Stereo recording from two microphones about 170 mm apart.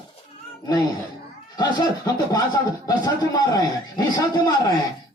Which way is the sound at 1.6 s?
25° left (ahead or behind).